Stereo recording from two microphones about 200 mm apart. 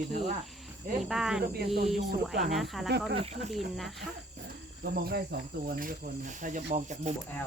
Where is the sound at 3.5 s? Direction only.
Centre (ahead or behind).